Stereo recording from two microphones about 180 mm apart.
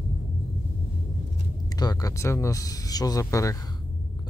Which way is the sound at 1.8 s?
20° left (ahead or behind).